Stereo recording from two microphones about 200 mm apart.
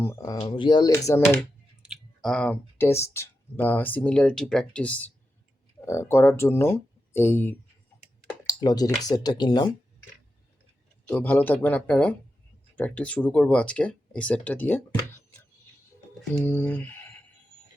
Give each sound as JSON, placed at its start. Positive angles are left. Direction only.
{"t": 0.0, "sound": "speech", "side_deg": 15}
{"t": 1.8, "sound": "speech", "side_deg": 0}
{"t": 11.1, "sound": "speech", "side_deg": 10}
{"t": 16.3, "sound": "a sound", "side_deg": 10}